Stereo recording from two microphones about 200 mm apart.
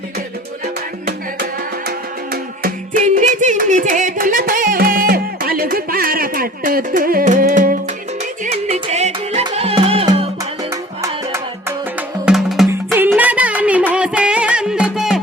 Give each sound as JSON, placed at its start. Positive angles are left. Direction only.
{"t": 2.3, "sound": "speech", "side_deg": -45}
{"t": 8.5, "sound": "music", "side_deg": -30}
{"t": 12.2, "sound": "music", "side_deg": 0}